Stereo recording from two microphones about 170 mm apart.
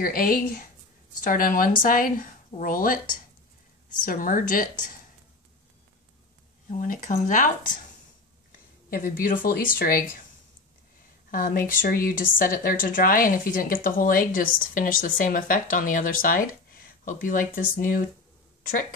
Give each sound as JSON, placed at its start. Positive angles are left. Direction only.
{"t": 0.0, "sound": "a woman's voice", "side_deg": 60}
{"t": 6.8, "sound": "speech", "side_deg": 50}
{"t": 11.2, "sound": "a woman's voice", "side_deg": 55}